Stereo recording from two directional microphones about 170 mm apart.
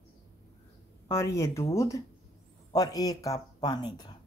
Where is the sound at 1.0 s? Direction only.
15° left (ahead or behind).